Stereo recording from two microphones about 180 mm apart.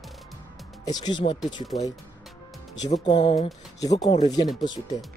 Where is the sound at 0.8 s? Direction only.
25° left (ahead or behind).